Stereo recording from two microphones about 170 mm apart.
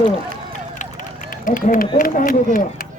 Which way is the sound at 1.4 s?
55° left (ahead or behind).